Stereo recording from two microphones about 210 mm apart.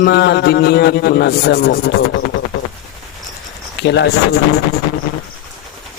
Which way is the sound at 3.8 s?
55° left (ahead or behind).